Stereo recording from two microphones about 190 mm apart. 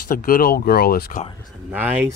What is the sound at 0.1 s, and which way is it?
Speech, 50° left (ahead or behind).